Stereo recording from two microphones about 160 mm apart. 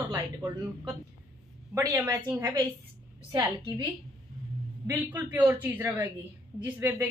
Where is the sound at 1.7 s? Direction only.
20° right (ahead or behind).